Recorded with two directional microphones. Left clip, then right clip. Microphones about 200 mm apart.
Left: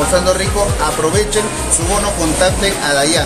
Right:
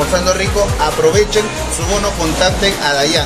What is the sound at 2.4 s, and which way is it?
Speech, centre (ahead or behind).